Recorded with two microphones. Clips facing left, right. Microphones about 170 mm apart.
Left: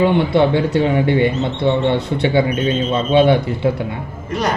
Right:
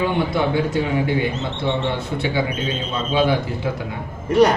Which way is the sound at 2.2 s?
60° left (ahead or behind).